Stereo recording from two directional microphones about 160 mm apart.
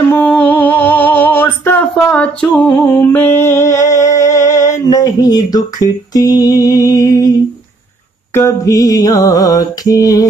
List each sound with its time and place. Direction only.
0.1 s music: 10° left (ahead or behind)
8.3 s mantra: 15° left (ahead or behind)